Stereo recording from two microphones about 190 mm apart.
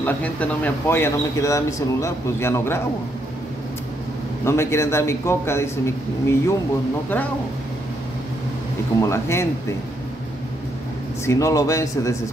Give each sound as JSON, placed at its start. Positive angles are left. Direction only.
{"t": 0.0, "sound": "a man's voice", "side_deg": 10}
{"t": 4.5, "sound": "a man's voice", "side_deg": 15}
{"t": 9.0, "sound": "a man's voice", "side_deg": 15}
{"t": 11.2, "sound": "a man's voice", "side_deg": 15}